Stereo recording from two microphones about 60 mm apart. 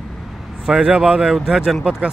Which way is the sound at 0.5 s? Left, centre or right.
Centre.